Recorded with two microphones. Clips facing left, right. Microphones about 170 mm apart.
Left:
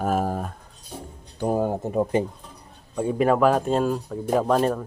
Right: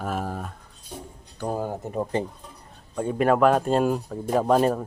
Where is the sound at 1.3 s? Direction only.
20° left (ahead or behind).